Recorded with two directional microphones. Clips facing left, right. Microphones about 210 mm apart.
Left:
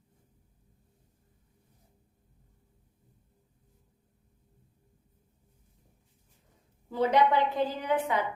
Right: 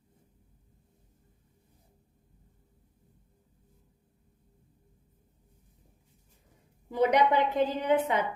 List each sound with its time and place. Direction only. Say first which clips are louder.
6.9 s a woman's voice: right 1 dB; 15° right (ahead or behind)